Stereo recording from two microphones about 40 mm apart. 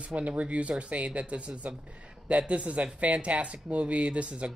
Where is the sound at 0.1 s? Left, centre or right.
Right.